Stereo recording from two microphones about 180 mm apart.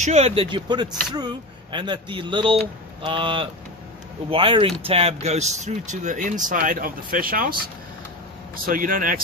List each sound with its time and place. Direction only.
0.0 s speech: 35° right (ahead or behind); by 7.5 s 50° right (ahead or behind)
8.6 s speech: 50° right (ahead or behind)